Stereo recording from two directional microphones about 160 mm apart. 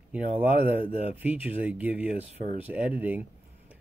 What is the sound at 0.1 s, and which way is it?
Speech, 10° right (ahead or behind).